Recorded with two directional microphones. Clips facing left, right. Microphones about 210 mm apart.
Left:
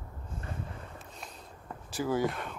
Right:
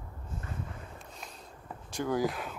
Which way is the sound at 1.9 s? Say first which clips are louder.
Even; 5° left (ahead or behind).